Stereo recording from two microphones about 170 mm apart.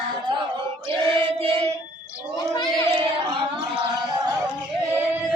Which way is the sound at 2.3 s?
25° left (ahead or behind).